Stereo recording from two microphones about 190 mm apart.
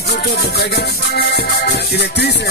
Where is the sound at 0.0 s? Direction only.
55° left (ahead or behind).